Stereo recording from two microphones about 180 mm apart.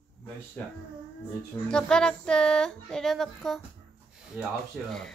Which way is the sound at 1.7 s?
5° left (ahead or behind).